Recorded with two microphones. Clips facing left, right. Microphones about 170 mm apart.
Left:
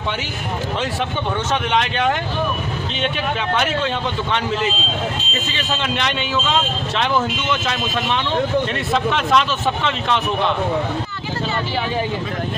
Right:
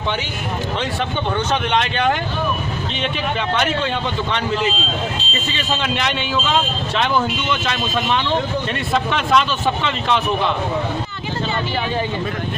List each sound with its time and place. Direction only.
1.5 s speech: centre (ahead or behind)